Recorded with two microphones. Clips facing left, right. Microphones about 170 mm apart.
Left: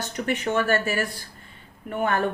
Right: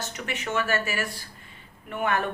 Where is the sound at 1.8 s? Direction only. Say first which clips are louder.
Left 2 dB; 45° left (ahead or behind).